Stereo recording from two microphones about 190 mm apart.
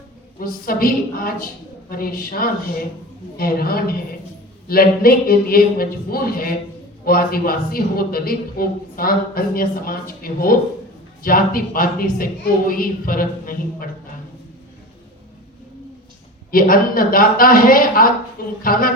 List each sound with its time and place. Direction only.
0.3 s speech: 50° left (ahead or behind)
16.5 s speech: 50° left (ahead or behind)